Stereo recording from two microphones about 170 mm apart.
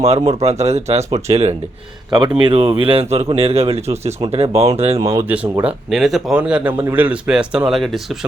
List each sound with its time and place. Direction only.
0.0 s speech: 40° right (ahead or behind)
5.0 s speech: 15° right (ahead or behind)